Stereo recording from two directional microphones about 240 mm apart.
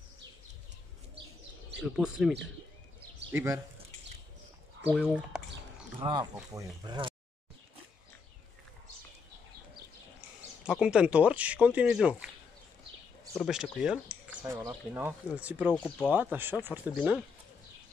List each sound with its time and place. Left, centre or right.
1.8 s speech: centre
3.3 s speech: centre
4.9 s speech: centre
5.9 s speech: centre
10.6 s speech: centre
13.4 s speech: centre
14.4 s speech: centre
15.7 s speech: centre
16.1 s speech: centre